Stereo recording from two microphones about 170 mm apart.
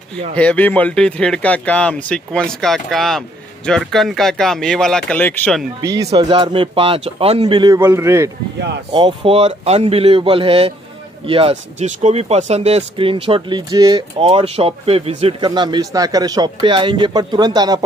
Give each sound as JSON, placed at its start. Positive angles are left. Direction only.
{"t": 0.4, "sound": "speech", "side_deg": 10}
{"t": 5.8, "sound": "speech", "side_deg": -20}
{"t": 8.9, "sound": "speech", "side_deg": -30}